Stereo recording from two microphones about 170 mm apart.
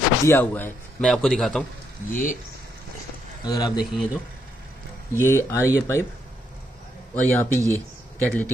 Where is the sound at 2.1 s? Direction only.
50° left (ahead or behind).